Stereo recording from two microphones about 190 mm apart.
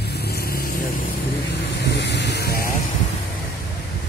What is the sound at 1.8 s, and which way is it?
Vehicle, 65° left (ahead or behind).